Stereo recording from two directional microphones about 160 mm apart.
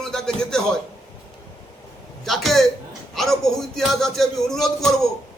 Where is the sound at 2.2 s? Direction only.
Centre (ahead or behind).